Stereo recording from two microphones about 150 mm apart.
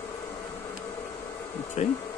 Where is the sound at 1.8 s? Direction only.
45° left (ahead or behind).